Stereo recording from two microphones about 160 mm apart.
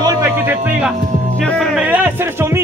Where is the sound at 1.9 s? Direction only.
10° right (ahead or behind).